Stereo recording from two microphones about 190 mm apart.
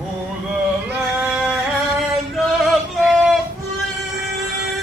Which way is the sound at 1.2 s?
Centre (ahead or behind).